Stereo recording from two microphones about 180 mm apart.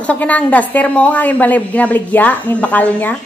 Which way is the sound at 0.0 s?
10° left (ahead or behind).